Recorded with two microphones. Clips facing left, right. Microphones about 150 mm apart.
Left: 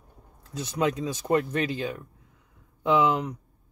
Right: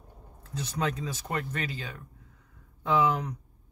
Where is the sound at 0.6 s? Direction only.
15° left (ahead or behind).